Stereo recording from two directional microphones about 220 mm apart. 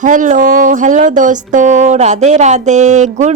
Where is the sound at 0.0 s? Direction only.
35° right (ahead or behind).